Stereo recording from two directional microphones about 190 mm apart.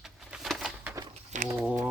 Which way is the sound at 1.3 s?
40° right (ahead or behind).